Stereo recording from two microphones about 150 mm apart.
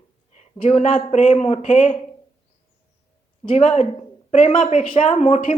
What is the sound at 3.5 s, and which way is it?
A woman's voice, 40° left (ahead or behind).